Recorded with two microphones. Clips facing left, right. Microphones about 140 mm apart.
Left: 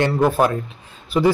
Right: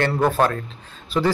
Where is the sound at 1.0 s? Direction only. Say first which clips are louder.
Left 4 dB; 15° left (ahead or behind).